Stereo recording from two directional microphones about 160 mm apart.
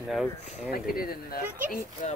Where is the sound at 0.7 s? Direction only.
70° left (ahead or behind).